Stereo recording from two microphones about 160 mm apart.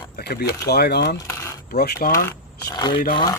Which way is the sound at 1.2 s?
20° left (ahead or behind).